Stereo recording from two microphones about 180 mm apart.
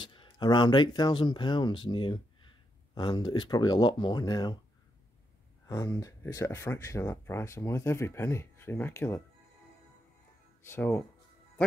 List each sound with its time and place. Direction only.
0.0 s speech: 25° left (ahead or behind)
5.7 s speech: 15° left (ahead or behind)
10.6 s speech: 10° left (ahead or behind)